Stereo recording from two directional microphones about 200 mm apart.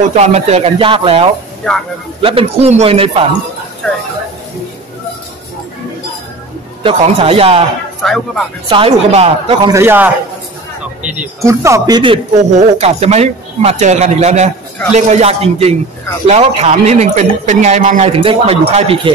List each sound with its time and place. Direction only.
0.1 s speech: 35° right (ahead or behind)
1.6 s speech: 5° left (ahead or behind)
2.2 s speech: 30° right (ahead or behind)
6.8 s speech: 25° right (ahead or behind)
8.0 s speech: centre (ahead or behind)
8.6 s speech: 25° right (ahead or behind)
9.7 s a man's voice: 10° right (ahead or behind); by 19.1 s 30° right (ahead or behind)